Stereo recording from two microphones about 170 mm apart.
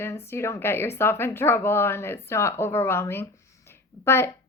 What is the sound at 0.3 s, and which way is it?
A woman's voice, 15° left (ahead or behind).